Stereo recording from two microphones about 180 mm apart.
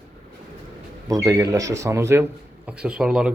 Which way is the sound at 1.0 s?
20° right (ahead or behind).